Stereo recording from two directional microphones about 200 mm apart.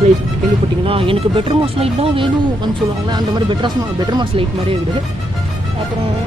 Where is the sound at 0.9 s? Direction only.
30° right (ahead or behind).